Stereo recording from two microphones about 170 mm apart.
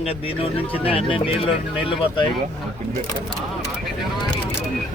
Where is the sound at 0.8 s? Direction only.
35° left (ahead or behind).